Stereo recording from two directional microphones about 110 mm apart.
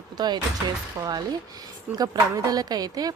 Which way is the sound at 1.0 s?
35° right (ahead or behind).